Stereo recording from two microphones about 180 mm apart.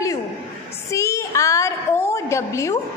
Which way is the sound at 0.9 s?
15° left (ahead or behind).